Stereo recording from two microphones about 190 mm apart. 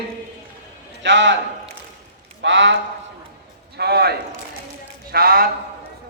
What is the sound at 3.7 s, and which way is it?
A man's voice, 60° right (ahead or behind).